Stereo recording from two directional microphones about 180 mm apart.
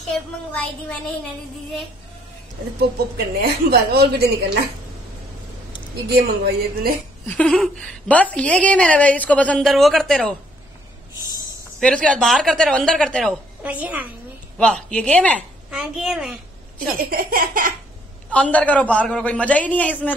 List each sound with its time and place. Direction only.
3.3 s speech: 60° right (ahead or behind)
6.0 s speech: 60° right (ahead or behind)
7.2 s a woman's voice: 5° left (ahead or behind)
11.8 s a woman's voice: 5° left (ahead or behind)
14.6 s a woman's voice: 5° left (ahead or behind)
17.0 s a sound: 55° right (ahead or behind)
18.3 s a woman's voice: 5° left (ahead or behind)